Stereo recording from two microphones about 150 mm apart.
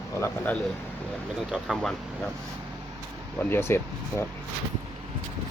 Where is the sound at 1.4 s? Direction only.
5° right (ahead or behind).